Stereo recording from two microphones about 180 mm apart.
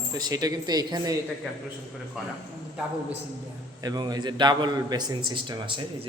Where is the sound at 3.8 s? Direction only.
20° right (ahead or behind).